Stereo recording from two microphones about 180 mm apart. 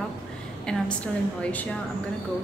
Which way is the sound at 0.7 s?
5° left (ahead or behind).